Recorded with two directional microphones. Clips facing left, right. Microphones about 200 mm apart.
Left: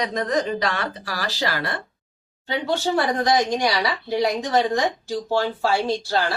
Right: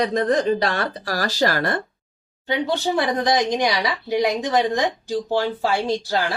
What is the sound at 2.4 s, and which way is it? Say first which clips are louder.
Speech: right 1 dB; 15° right (ahead or behind).